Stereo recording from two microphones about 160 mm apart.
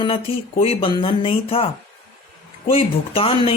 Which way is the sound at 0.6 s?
35° left (ahead or behind).